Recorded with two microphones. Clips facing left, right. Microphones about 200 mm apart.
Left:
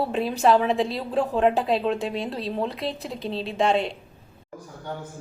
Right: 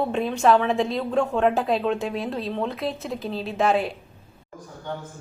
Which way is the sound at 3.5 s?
5° right (ahead or behind).